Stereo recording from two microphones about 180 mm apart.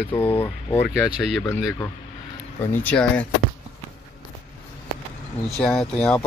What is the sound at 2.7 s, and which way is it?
Speech, 10° left (ahead or behind).